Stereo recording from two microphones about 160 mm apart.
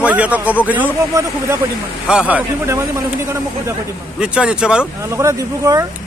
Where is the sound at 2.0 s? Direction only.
5° right (ahead or behind).